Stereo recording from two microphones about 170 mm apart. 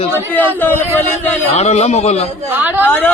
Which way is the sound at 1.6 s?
40° left (ahead or behind).